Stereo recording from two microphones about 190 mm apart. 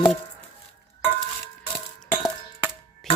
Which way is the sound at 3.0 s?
Centre (ahead or behind).